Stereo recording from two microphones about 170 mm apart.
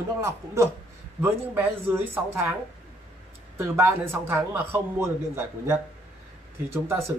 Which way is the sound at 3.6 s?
15° right (ahead or behind).